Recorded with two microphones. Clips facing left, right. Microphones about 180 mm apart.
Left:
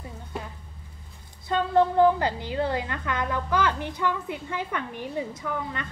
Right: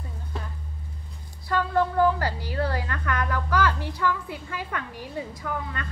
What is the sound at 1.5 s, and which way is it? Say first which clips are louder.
A woman's voice: left 2 dB; 20° left (ahead or behind).